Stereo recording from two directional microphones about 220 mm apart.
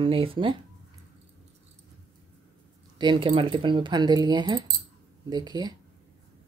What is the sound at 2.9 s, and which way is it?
Speech, 20° right (ahead or behind).